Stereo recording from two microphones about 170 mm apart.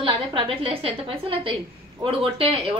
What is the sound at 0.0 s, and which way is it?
A woman's voice, 30° right (ahead or behind).